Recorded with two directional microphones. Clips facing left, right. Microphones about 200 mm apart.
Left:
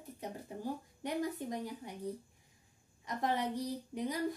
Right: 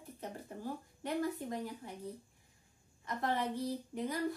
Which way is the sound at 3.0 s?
15° left (ahead or behind).